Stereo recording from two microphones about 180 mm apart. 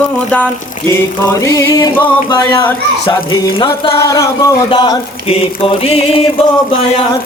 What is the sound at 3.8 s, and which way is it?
Speech, 25° left (ahead or behind).